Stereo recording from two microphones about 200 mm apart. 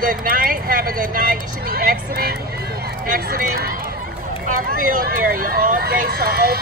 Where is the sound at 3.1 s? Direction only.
50° right (ahead or behind).